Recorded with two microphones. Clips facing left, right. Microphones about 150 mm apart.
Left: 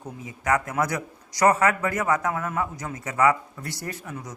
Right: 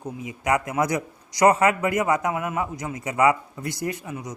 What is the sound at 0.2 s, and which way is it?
A man's voice, 15° right (ahead or behind).